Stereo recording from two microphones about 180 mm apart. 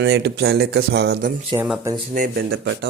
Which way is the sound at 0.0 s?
65° right (ahead or behind).